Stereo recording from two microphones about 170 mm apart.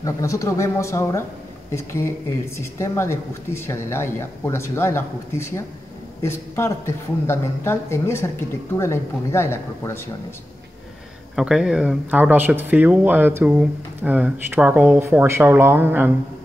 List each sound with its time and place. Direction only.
0.0 s a woman's voice: 20° left (ahead or behind)
11.3 s speech: 5° right (ahead or behind)